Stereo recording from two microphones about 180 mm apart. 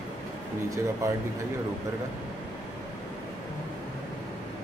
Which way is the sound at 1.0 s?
15° right (ahead or behind).